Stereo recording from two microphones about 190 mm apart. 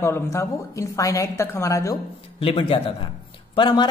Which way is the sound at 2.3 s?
30° left (ahead or behind).